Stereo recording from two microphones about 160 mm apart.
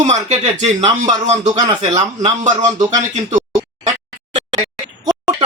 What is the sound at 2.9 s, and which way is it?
Speech, 50° right (ahead or behind).